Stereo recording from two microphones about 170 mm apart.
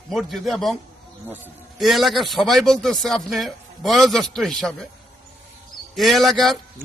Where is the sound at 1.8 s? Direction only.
Centre (ahead or behind).